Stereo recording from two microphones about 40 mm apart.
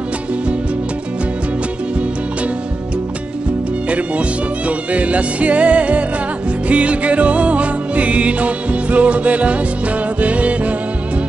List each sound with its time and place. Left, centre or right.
3.9 s music: right